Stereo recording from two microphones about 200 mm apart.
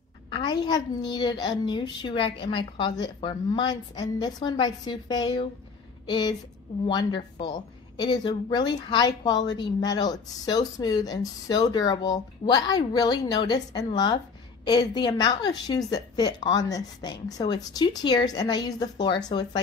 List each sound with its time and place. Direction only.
0.3 s a woman's voice: 20° left (ahead or behind)